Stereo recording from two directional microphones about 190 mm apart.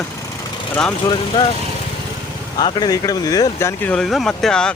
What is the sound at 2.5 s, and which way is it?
Speech, 25° left (ahead or behind).